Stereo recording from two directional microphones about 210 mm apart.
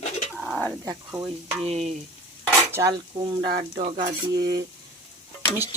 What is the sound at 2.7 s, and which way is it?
Dishes, 10° right (ahead or behind).